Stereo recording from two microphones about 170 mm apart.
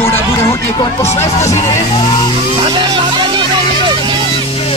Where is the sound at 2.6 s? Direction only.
25° right (ahead or behind).